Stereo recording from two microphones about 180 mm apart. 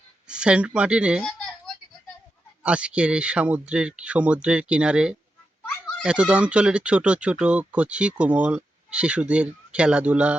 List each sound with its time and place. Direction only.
0.3 s speech: 5° right (ahead or behind)
2.6 s speech: 5° right (ahead or behind)